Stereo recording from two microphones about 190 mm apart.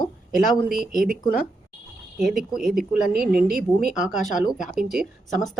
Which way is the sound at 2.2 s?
Centre (ahead or behind).